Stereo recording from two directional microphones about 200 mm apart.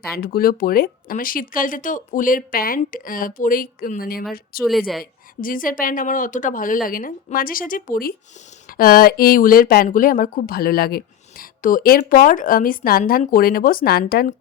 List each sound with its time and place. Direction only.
0.2 s speech: 45° left (ahead or behind)